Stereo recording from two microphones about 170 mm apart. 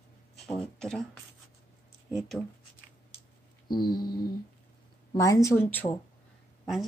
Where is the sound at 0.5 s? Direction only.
5° left (ahead or behind).